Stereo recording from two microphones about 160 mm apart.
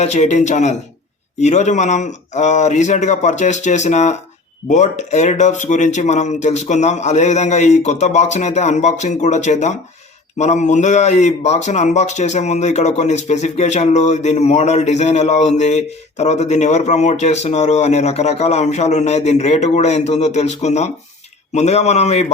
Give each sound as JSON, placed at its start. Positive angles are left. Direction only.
{"t": 0.0, "sound": "a man's voice", "side_deg": 45}